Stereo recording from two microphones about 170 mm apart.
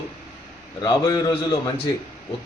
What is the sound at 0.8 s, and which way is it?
Speech, 20° left (ahead or behind).